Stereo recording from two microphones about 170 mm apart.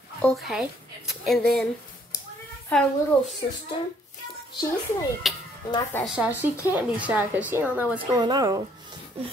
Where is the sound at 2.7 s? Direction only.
5° left (ahead or behind).